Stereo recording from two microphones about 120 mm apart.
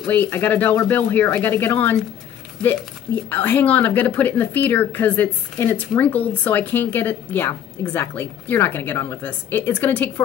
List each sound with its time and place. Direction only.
0.0 s speech: 15° left (ahead or behind)